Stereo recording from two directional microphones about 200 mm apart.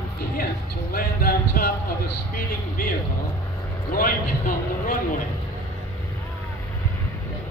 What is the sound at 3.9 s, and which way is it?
A man's voice, 45° left (ahead or behind).